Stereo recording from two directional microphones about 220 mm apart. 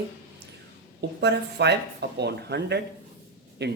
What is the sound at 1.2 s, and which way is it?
Speech, 50° right (ahead or behind).